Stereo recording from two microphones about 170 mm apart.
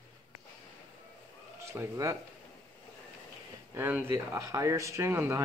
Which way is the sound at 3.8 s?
10° right (ahead or behind).